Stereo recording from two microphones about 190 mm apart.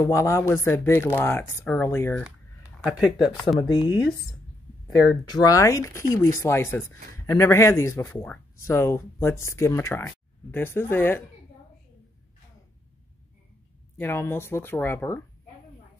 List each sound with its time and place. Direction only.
0.0 s speech: 15° left (ahead or behind)
2.9 s speech: centre (ahead or behind)
3.5 s speech: 25° left (ahead or behind)
13.9 s speech: 10° left (ahead or behind)